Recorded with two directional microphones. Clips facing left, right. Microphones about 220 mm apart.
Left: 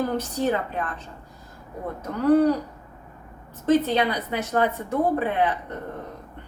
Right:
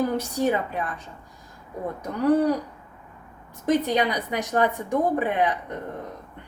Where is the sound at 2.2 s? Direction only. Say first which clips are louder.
Left 2 dB; 15° right (ahead or behind).